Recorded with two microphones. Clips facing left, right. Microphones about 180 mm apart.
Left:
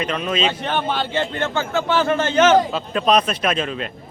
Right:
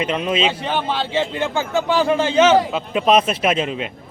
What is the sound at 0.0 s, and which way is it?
Speech, 20° right (ahead or behind).